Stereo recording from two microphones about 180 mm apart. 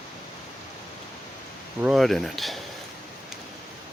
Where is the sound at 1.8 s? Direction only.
Centre (ahead or behind).